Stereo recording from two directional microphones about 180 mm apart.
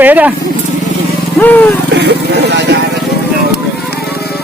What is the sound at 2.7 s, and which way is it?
Vehicle, 70° right (ahead or behind).